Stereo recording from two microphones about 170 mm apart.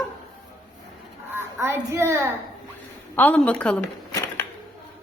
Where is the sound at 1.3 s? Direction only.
15° right (ahead or behind).